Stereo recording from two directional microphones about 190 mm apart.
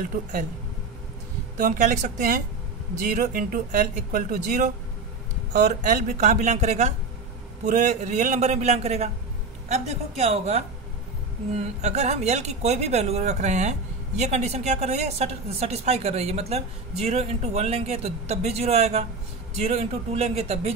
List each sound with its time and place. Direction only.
1.6 s a woman's voice: 40° right (ahead or behind)